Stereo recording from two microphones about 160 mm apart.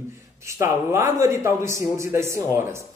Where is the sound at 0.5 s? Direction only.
20° right (ahead or behind).